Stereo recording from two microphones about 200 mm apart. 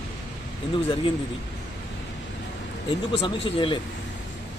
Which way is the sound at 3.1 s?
25° left (ahead or behind).